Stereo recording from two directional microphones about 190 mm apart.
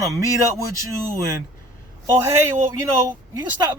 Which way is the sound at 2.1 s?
15° right (ahead or behind).